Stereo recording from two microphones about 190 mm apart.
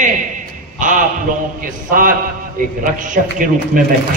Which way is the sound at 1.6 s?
45° right (ahead or behind).